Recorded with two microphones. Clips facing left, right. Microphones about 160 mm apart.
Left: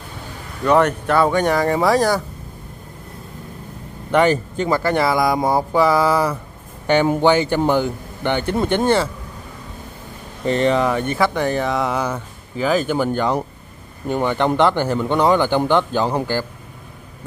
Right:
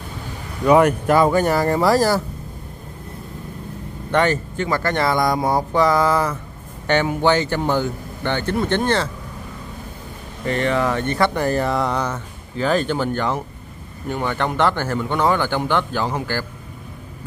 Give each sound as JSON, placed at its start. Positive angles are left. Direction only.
{"t": 0.7, "sound": "speech", "side_deg": -10}
{"t": 4.1, "sound": "speech", "side_deg": 10}
{"t": 10.4, "sound": "speech", "side_deg": 25}
{"t": 10.9, "sound": "speech", "side_deg": 10}